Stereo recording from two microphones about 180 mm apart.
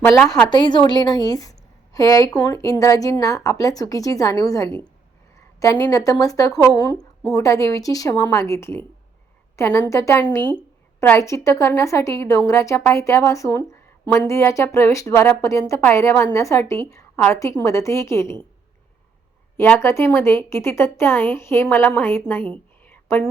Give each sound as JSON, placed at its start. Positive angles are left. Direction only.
{"t": 0.0, "sound": "a woman's voice", "side_deg": 15}
{"t": 19.5, "sound": "a woman's voice", "side_deg": 10}